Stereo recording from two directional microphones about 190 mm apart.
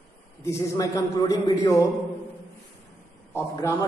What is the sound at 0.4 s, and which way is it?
A man's voice, 15° left (ahead or behind).